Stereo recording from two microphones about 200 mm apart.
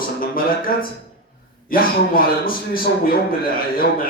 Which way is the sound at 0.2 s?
45° left (ahead or behind).